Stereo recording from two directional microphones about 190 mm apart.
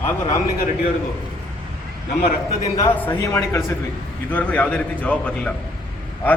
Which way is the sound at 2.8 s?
15° left (ahead or behind).